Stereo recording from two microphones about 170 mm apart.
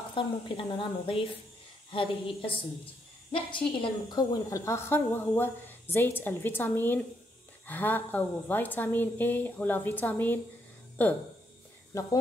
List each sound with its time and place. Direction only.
0.1 s a woman's voice: 30° left (ahead or behind)